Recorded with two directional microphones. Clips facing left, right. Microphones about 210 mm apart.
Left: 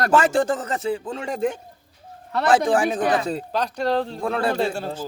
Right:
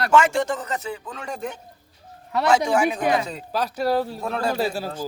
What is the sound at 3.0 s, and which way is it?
Speech, 15° right (ahead or behind).